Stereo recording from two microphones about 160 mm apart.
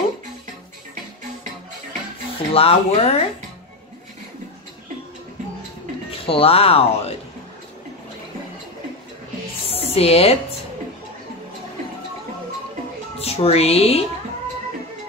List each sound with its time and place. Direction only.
2.5 s speech: 40° left (ahead or behind)
6.0 s speech: 35° left (ahead or behind)
9.7 s music: 40° left (ahead or behind)
13.2 s speech: 40° left (ahead or behind)